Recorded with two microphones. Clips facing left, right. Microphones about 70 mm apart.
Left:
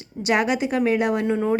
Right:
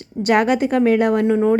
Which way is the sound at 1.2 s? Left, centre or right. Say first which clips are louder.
Right 6 dB; right.